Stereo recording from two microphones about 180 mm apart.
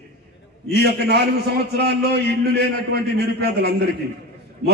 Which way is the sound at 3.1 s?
65° right (ahead or behind).